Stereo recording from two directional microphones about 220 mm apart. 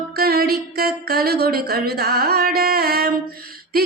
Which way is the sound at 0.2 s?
45° right (ahead or behind).